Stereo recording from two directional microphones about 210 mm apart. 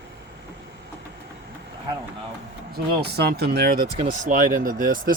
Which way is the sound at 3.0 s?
50° right (ahead or behind).